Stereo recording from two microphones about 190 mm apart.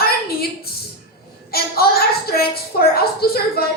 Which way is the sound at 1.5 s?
55° left (ahead or behind).